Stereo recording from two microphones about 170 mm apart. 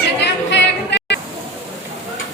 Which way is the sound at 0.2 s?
90° left.